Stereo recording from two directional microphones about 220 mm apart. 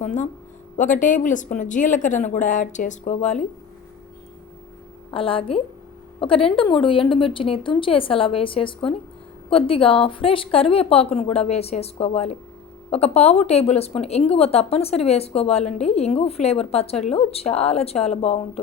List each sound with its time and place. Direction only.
0.0 s speech: 35° left (ahead or behind)
5.1 s speech: 25° left (ahead or behind)